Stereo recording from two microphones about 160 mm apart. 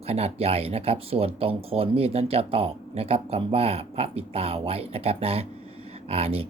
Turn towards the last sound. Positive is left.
turn(degrees=-40)  # may be behind; listen again after turning